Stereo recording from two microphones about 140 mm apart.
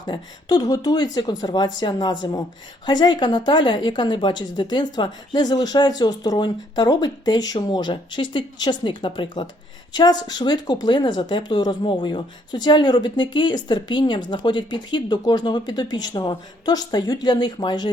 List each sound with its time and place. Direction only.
0.0 s speech: 30° left (ahead or behind)